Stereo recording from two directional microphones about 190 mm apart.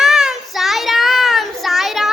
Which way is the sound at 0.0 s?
Centre (ahead or behind).